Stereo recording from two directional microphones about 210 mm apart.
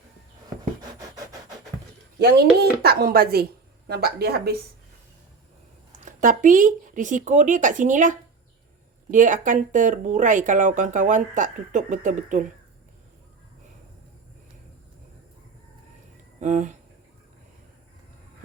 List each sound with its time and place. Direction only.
2.1 s speech: 50° right (ahead or behind)
6.1 s speech: 40° right (ahead or behind)
16.4 s speech: 35° right (ahead or behind)